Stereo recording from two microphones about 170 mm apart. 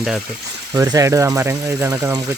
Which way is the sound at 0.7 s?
20° right (ahead or behind).